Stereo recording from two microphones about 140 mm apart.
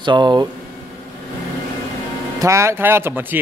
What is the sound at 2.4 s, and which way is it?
Speech, 20° right (ahead or behind).